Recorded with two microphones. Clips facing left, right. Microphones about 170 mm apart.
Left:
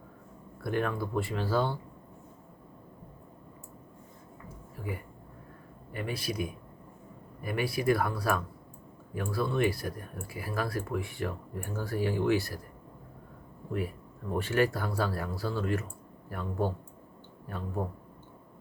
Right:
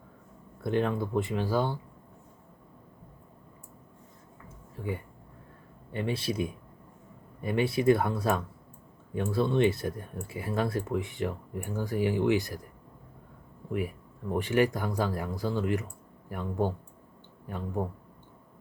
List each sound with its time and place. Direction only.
0.6 s speech: 20° right (ahead or behind)
4.8 s speech: 25° right (ahead or behind)
13.7 s speech: 15° right (ahead or behind)